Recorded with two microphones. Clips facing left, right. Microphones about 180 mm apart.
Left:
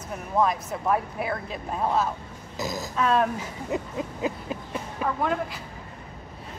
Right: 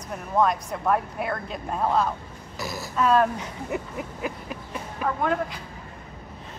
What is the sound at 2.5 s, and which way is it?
Speech, 20° left (ahead or behind).